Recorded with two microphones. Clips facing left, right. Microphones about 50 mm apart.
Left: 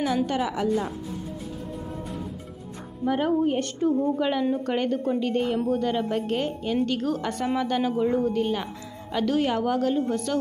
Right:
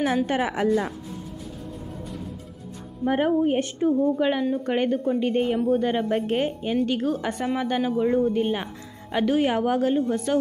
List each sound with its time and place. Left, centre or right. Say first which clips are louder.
0.0 s a woman's voice: right 2 dB; right
3.3 s a woman's voice: right 2 dB; centre